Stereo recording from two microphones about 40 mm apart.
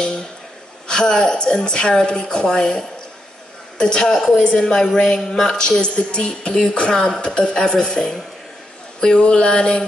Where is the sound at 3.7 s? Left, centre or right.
Centre.